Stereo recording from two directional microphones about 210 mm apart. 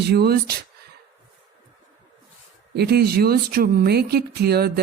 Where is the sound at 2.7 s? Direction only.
50° right (ahead or behind).